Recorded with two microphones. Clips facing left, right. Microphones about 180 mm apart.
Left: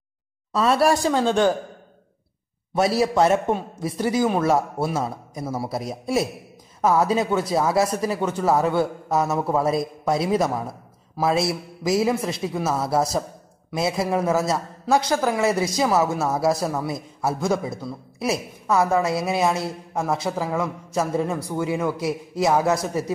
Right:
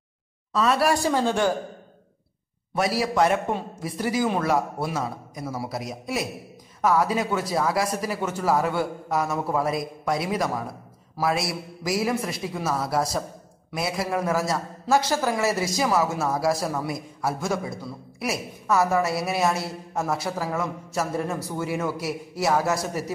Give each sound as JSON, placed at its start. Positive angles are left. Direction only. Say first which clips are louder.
{"t": 0.6, "sound": "a woman's voice", "louder": "left 3 dB", "side_deg": 25}
{"t": 2.7, "sound": "a woman's voice", "louder": "left 4 dB", "side_deg": 25}